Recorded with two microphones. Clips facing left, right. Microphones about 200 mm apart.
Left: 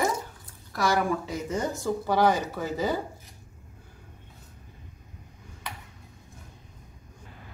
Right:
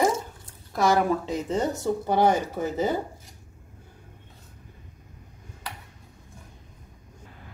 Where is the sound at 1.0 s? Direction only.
25° right (ahead or behind).